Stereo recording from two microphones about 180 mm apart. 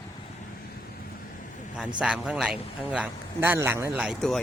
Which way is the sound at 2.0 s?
5° right (ahead or behind).